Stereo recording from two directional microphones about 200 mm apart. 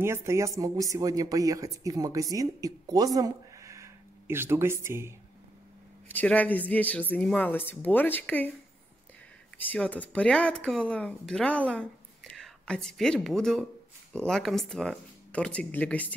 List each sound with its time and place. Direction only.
0.0 s speech: 15° right (ahead or behind)
6.0 s speech: 10° left (ahead or behind)
9.6 s speech: 10° left (ahead or behind)